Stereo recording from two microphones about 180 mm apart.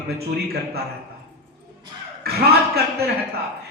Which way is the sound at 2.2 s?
60° right (ahead or behind).